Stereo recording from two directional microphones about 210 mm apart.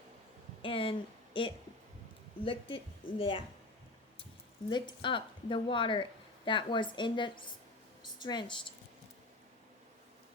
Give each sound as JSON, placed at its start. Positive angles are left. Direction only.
{"t": 0.6, "sound": "speech", "side_deg": 25}
{"t": 4.7, "sound": "speech", "side_deg": 20}